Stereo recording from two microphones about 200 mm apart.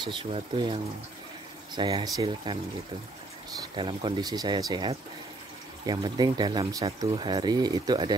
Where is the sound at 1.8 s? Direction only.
20° right (ahead or behind).